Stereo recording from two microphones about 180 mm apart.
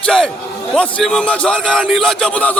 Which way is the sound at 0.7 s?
5° left (ahead or behind).